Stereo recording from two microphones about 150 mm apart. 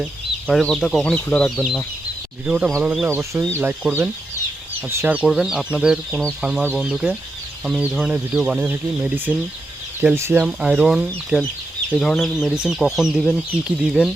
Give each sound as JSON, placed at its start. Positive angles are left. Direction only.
{"t": 0.4, "sound": "speech", "side_deg": 5}
{"t": 2.5, "sound": "speech", "side_deg": -5}
{"t": 5.2, "sound": "speech", "side_deg": 0}